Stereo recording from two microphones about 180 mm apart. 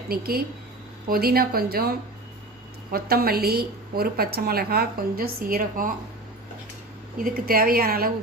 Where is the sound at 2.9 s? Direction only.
60° right (ahead or behind).